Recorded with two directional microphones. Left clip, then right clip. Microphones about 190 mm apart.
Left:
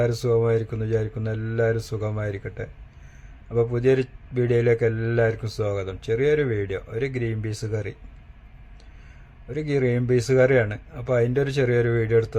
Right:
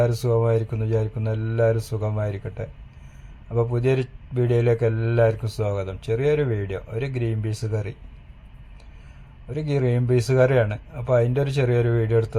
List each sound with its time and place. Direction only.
0.0 s a man's voice: 10° left (ahead or behind)
9.5 s a man's voice: 10° left (ahead or behind)